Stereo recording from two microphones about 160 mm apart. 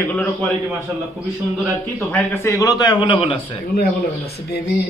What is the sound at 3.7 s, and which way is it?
Speech, 80° left.